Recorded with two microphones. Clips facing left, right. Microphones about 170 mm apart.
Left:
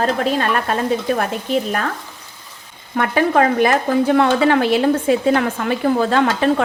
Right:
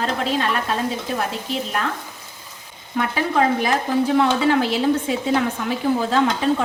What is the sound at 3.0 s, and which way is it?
A woman's voice, 60° left (ahead or behind).